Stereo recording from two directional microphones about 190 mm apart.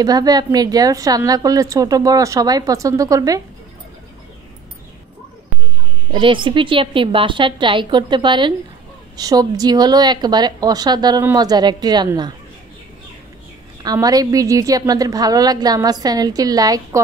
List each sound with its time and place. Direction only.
0.0 s a woman's voice: 20° right (ahead or behind)
6.1 s a woman's voice: 25° right (ahead or behind)
13.8 s a woman's voice: 20° right (ahead or behind)